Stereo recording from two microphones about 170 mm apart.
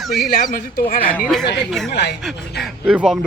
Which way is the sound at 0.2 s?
60° left (ahead or behind).